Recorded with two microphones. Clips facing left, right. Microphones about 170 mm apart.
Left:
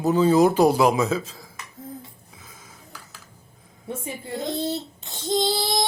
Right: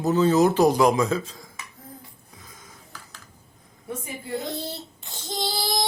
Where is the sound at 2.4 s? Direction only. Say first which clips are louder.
Even; centre (ahead or behind).